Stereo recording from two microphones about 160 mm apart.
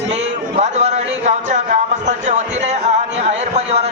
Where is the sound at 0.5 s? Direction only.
45° right (ahead or behind).